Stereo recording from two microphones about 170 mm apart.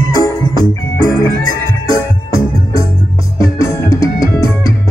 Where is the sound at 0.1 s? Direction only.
20° left (ahead or behind).